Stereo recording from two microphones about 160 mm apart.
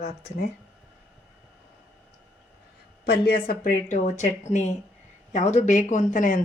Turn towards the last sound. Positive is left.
turn(degrees=55)  # may be behind; listen again after turning